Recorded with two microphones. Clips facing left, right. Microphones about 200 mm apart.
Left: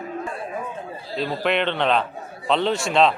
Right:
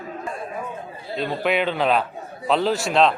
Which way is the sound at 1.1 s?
Centre (ahead or behind).